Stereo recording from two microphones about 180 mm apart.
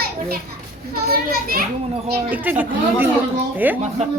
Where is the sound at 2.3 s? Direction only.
10° right (ahead or behind).